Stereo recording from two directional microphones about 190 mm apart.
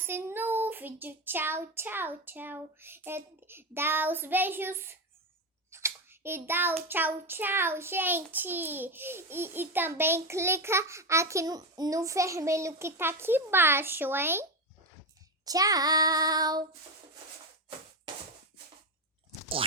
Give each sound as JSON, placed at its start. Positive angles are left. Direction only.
{"t": 0.0, "sound": "a child's voice", "side_deg": -10}
{"t": 15.4, "sound": "child singing", "side_deg": -20}